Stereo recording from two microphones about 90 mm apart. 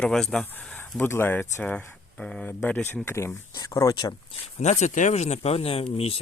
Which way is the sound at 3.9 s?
50° left (ahead or behind).